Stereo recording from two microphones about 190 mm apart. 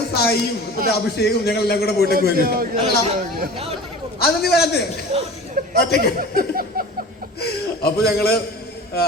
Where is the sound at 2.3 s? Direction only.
50° right (ahead or behind).